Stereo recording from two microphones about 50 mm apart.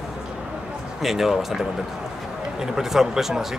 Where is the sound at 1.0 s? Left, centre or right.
Centre.